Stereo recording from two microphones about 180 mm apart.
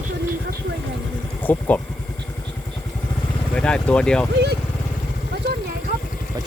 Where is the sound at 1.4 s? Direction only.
10° left (ahead or behind).